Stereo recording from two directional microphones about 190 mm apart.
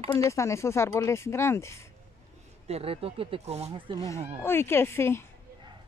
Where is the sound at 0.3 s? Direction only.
15° left (ahead or behind).